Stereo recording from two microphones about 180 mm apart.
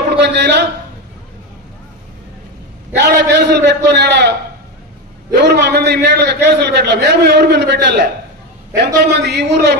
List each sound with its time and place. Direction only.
0.2 s a man's voice: 65° right (ahead or behind)
3.0 s a man's voice: 70° right (ahead or behind)